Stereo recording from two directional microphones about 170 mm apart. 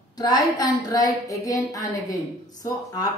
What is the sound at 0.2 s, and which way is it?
Speech, 20° left (ahead or behind).